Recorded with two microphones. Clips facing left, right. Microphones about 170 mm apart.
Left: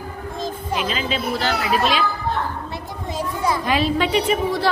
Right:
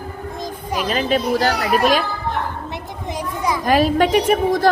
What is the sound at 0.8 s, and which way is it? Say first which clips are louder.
Speech: right 9 dB; 45° right (ahead or behind).